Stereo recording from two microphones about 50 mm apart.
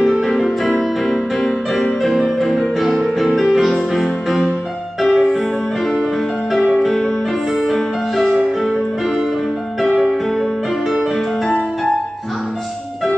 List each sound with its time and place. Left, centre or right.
0.0 s music: centre
6.5 s music: centre
9.8 s music: centre